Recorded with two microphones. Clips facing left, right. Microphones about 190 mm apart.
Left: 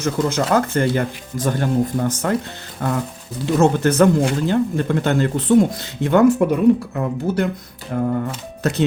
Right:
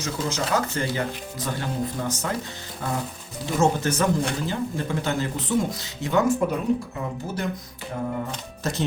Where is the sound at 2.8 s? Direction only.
65° left (ahead or behind).